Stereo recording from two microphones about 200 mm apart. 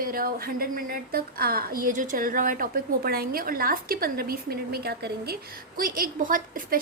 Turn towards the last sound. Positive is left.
turn(degrees=-45)  # may be behind; listen again after turning